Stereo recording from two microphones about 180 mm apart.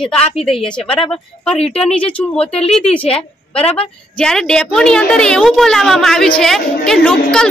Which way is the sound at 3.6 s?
30° left (ahead or behind).